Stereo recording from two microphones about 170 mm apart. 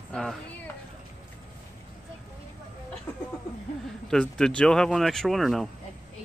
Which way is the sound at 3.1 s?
10° left (ahead or behind).